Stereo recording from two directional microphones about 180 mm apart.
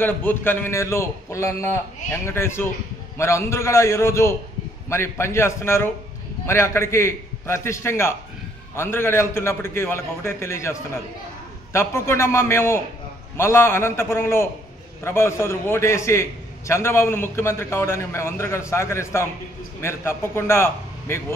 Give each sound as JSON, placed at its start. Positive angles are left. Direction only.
{"t": 0.0, "sound": "a man's voice", "side_deg": 10}